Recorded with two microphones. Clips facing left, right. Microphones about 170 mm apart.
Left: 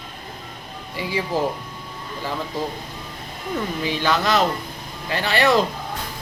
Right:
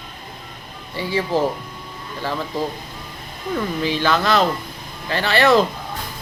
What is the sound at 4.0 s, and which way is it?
Speech, 15° left (ahead or behind).